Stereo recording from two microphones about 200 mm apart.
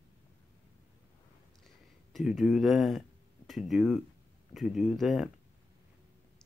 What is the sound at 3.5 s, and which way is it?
Speech, centre (ahead or behind).